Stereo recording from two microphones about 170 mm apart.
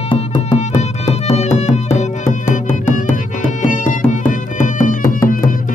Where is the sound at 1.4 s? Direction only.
40° left (ahead or behind).